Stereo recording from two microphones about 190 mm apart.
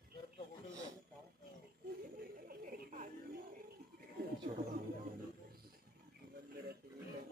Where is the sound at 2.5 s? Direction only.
45° right (ahead or behind).